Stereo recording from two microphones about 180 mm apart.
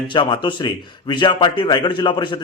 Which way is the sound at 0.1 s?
25° left (ahead or behind).